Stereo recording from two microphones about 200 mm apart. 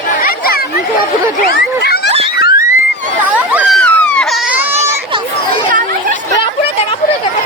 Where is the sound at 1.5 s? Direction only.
55° left (ahead or behind).